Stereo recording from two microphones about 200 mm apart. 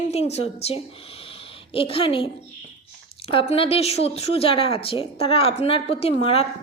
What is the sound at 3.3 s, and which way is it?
Speech, 30° left (ahead or behind).